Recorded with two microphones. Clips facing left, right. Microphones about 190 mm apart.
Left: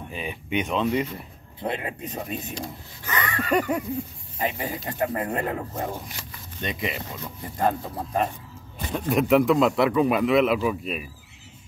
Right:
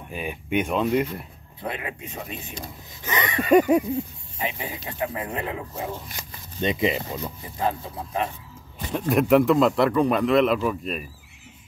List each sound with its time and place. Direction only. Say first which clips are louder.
0.1 s speech: right 3 dB; 10° right (ahead or behind)
1.6 s speech: left 3 dB; 30° left (ahead or behind)
2.5 s speech: left 3 dB; 20° right (ahead or behind)
4.4 s speech: left 3 dB; 45° left (ahead or behind)
6.6 s speech: right 7 dB; 25° right (ahead or behind)
7.5 s speech: left 3 dB; 45° left (ahead or behind)
8.9 s speech: right 2 dB; centre (ahead or behind)